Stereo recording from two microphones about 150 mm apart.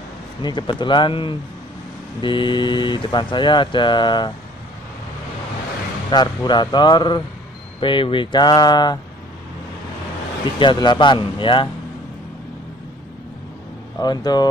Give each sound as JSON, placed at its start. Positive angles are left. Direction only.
{"t": 0.4, "sound": "speech", "side_deg": 30}
{"t": 6.0, "sound": "speech", "side_deg": 30}
{"t": 10.6, "sound": "speech", "side_deg": 30}
{"t": 13.9, "sound": "speech", "side_deg": 25}